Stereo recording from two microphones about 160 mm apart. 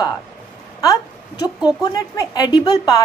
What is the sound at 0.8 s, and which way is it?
A woman's voice, 20° left (ahead or behind).